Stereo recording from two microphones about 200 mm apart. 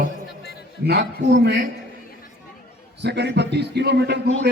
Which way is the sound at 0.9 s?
55° right (ahead or behind).